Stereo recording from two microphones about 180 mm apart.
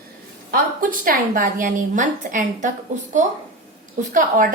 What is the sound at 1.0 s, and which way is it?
A woman's voice, 50° right (ahead or behind).